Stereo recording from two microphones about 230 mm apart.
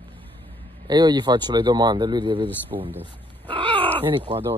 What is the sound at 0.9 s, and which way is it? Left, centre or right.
Speech, centre.